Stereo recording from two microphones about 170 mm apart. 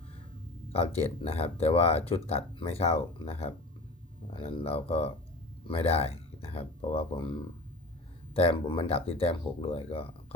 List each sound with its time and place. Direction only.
0.7 s speech: 35° left (ahead or behind)